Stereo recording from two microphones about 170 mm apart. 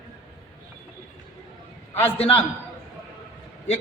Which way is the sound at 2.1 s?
30° left (ahead or behind).